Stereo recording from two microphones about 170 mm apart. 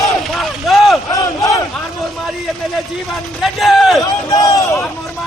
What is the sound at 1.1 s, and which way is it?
Battle cry, 20° left (ahead or behind).